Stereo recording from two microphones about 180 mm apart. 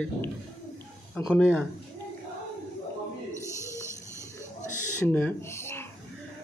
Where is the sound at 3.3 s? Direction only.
15° right (ahead or behind).